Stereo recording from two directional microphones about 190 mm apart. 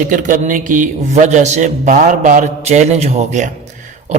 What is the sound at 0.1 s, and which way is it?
A man's voice, 40° right (ahead or behind).